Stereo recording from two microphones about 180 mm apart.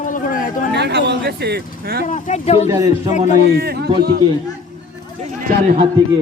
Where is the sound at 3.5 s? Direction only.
60° right (ahead or behind).